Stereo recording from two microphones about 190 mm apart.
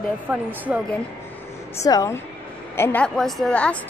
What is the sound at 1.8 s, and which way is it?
A woman's voice, 15° left (ahead or behind).